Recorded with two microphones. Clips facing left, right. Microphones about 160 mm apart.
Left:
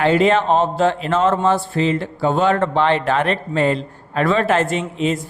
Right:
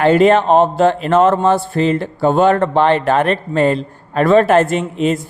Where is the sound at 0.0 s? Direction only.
50° right (ahead or behind).